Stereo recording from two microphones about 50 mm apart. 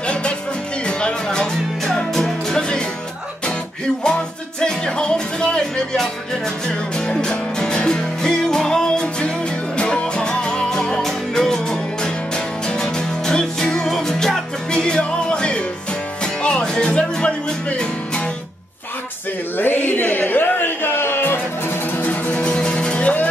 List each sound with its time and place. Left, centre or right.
0.0 s music: left
4.0 s music: centre
19.5 s music: left
21.9 s music: left
22.4 s music: centre